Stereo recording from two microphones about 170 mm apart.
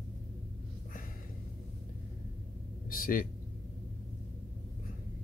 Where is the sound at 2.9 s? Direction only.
55° left (ahead or behind).